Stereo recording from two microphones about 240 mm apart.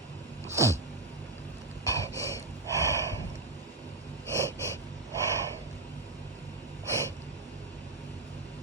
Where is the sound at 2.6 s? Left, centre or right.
Centre.